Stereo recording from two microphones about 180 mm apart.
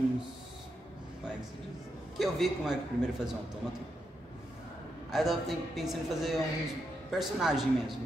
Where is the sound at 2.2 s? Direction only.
Centre (ahead or behind).